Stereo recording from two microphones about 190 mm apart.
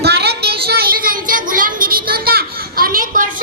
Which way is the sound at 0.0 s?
55° right (ahead or behind).